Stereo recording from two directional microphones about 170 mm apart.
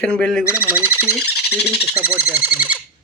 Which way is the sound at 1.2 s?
70° left (ahead or behind).